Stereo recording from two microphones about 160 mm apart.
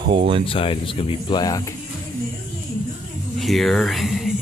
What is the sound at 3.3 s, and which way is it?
Speech, centre (ahead or behind).